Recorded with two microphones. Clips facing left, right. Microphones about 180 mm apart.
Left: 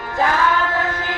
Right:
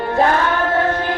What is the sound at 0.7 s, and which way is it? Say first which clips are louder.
Music: right 6 dB; 30° right (ahead or behind).